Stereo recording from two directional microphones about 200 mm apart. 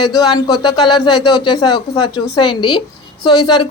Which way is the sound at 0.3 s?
20° left (ahead or behind).